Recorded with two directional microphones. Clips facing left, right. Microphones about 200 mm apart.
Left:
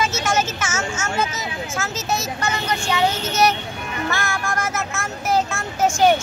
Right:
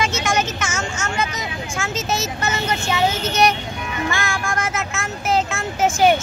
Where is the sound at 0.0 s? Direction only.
5° left (ahead or behind).